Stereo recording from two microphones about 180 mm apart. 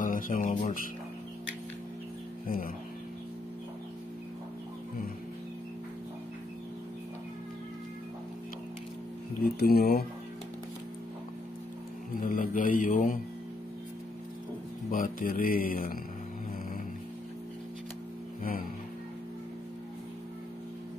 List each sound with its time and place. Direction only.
0.0 s music: 50° left (ahead or behind)
2.4 s music: 50° left (ahead or behind)
9.4 s speech: 60° left (ahead or behind)
12.2 s speech: 50° left (ahead or behind)
14.9 s speech: 50° left (ahead or behind)
18.4 s music: 50° left (ahead or behind)